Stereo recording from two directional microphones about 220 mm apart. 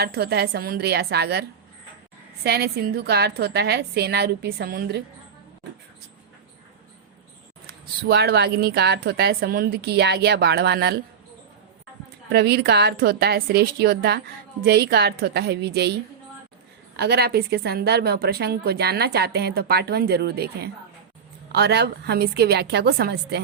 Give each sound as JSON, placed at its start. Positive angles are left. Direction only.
{"t": 0.0, "sound": "a woman's voice", "side_deg": -45}
{"t": 7.7, "sound": "a woman's voice", "side_deg": -45}
{"t": 12.3, "sound": "a woman's voice", "side_deg": -45}
{"t": 17.0, "sound": "a woman's voice", "side_deg": -45}